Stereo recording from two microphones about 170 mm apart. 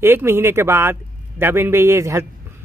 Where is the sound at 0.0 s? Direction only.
15° right (ahead or behind).